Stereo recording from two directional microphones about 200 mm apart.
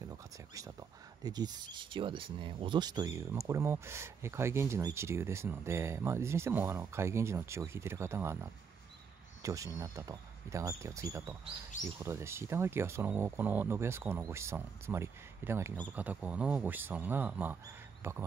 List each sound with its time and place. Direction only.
0.6 s speech: 15° right (ahead or behind)